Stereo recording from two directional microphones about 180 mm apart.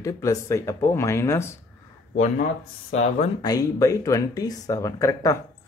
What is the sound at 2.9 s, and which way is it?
Speech, 40° left (ahead or behind).